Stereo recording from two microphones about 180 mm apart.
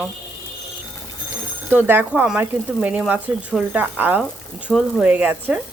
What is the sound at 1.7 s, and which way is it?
Speech, 10° right (ahead or behind).